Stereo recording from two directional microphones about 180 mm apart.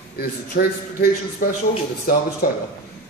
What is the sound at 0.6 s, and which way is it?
Speech, 55° left (ahead or behind).